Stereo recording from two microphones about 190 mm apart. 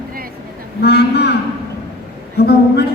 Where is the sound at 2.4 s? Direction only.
60° left (ahead or behind).